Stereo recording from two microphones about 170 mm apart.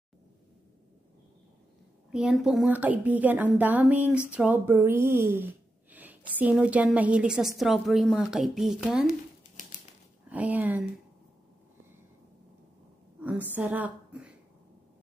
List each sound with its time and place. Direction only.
2.0 s speech: 5° right (ahead or behind)
10.3 s speech: 10° right (ahead or behind)
13.2 s a woman's voice: 10° right (ahead or behind)